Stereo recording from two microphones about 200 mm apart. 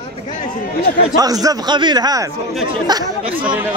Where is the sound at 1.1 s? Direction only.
20° right (ahead or behind).